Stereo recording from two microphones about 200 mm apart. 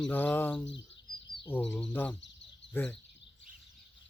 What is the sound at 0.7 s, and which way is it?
Speech, 65° left (ahead or behind).